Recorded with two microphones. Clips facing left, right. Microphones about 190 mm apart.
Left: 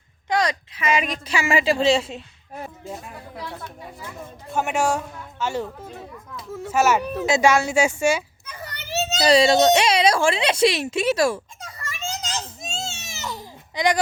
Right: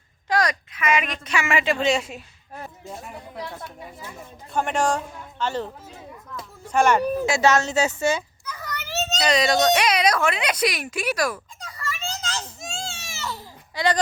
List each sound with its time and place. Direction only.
0.3 s a woman's voice: 25° left (ahead or behind)
2.5 s speech: 15° left (ahead or behind)
2.9 s a woman's voice: centre (ahead or behind)
4.5 s a man's voice: 10° left (ahead or behind)
6.7 s a woman's voice: 5° left (ahead or behind)
8.4 s children playing: 30° left (ahead or behind)
8.9 s children playing: 15° left (ahead or behind)
9.1 s a sound: 30° left (ahead or behind); by 14.0 s 15° left (ahead or behind)